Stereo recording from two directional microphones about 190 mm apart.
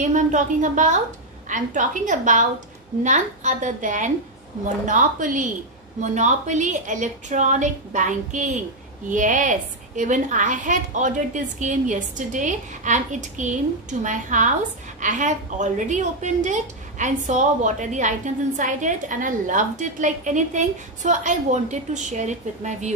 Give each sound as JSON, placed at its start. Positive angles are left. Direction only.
{"t": 0.0, "sound": "a woman's voice", "side_deg": -40}